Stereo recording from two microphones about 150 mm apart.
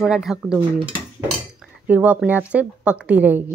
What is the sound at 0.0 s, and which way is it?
A woman's voice, 5° right (ahead or behind).